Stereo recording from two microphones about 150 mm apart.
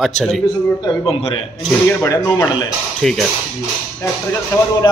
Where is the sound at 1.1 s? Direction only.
40° left (ahead or behind).